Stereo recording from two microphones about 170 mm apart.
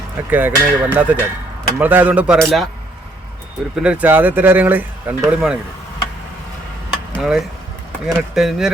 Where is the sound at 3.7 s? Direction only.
5° right (ahead or behind).